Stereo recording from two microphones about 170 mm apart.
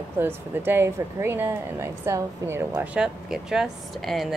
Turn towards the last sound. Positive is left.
turn(degrees=0)  # may be behind; listen again after turning